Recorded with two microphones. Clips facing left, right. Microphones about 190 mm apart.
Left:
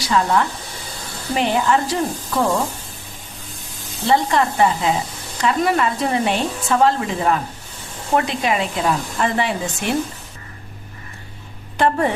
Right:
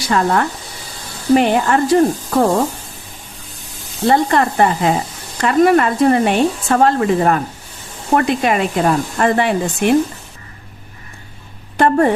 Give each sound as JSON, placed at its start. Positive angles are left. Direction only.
{"t": 0.1, "sound": "speech", "side_deg": -55}
{"t": 4.0, "sound": "speech", "side_deg": -50}
{"t": 11.8, "sound": "speech", "side_deg": -50}